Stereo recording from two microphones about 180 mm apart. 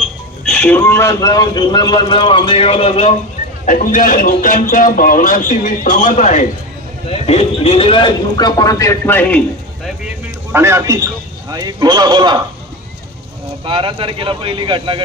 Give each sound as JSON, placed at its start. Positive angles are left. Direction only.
{"t": 0.5, "sound": "speech", "side_deg": 10}
{"t": 3.6, "sound": "a man's voice", "side_deg": 50}
{"t": 7.1, "sound": "speech", "side_deg": 35}
{"t": 10.0, "sound": "a sound", "side_deg": -15}
{"t": 11.5, "sound": "speech", "side_deg": -20}
{"t": 13.7, "sound": "speech", "side_deg": -30}